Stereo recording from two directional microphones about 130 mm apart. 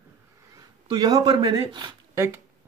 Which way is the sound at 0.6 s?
30° right (ahead or behind).